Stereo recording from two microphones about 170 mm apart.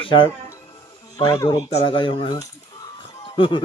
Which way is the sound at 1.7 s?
35° left (ahead or behind).